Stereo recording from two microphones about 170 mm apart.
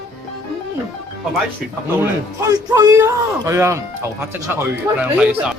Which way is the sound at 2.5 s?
20° right (ahead or behind).